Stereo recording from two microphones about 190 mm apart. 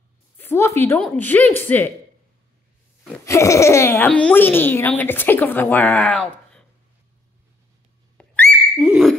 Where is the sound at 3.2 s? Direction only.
15° left (ahead or behind).